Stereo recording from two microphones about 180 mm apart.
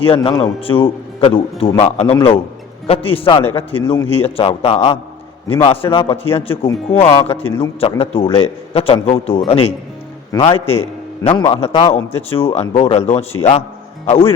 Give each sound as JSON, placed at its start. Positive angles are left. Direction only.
{"t": 0.0, "sound": "a man's voice", "side_deg": 30}
{"t": 10.3, "sound": "a man's voice", "side_deg": 20}
{"t": 11.2, "sound": "a man's voice", "side_deg": 30}